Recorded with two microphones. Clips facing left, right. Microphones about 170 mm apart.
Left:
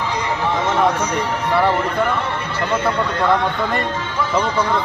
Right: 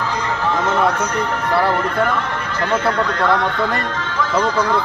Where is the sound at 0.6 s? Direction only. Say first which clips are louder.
Even; 10° left (ahead or behind).